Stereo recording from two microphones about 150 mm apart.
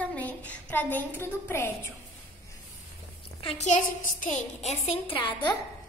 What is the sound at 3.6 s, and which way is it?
A woman's voice, 55° left (ahead or behind).